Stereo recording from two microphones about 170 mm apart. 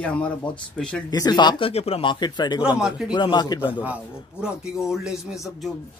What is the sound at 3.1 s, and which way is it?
Speech, 25° left (ahead or behind).